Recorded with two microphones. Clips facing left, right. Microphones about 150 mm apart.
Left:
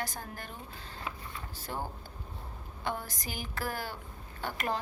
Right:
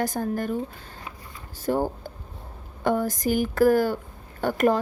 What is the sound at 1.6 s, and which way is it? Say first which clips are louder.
A woman's voice: right 15 dB; 45° right (ahead or behind).